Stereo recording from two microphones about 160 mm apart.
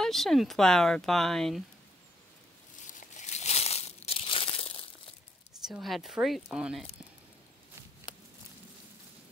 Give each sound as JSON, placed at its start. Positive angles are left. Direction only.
{"t": 0.0, "sound": "speech", "side_deg": 0}
{"t": 2.9, "sound": "crumpling", "side_deg": 50}
{"t": 5.7, "sound": "speech", "side_deg": 0}